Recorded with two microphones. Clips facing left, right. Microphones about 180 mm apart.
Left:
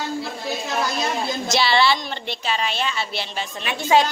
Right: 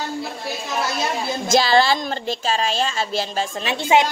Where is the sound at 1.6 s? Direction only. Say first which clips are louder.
Even; 45° right (ahead or behind).